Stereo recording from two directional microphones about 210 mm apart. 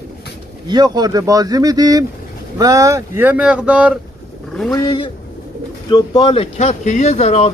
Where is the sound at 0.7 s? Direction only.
20° right (ahead or behind).